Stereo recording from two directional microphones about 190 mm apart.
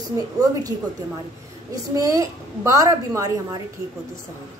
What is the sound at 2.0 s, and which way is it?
A woman's voice, 15° right (ahead or behind).